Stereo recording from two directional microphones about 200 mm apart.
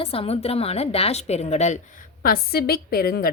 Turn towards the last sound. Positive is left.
turn(degrees=50)  # may be behind; listen again after turning